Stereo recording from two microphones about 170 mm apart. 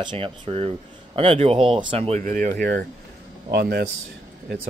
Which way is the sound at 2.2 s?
55° right (ahead or behind).